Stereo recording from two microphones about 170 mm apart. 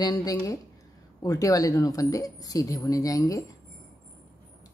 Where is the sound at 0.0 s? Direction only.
20° left (ahead or behind).